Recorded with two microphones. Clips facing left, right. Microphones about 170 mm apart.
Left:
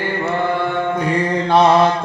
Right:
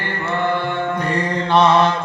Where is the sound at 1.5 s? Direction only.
40° left (ahead or behind).